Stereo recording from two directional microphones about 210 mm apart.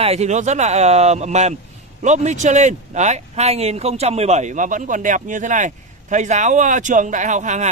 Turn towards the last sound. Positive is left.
turn(degrees=-35)  # may be behind; listen again after turning